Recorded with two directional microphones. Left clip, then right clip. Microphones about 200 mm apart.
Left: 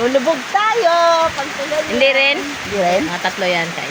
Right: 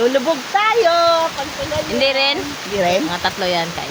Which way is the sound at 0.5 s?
15° right (ahead or behind).